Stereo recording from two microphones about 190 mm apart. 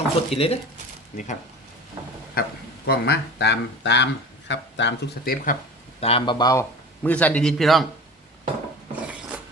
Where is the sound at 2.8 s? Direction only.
60° left (ahead or behind).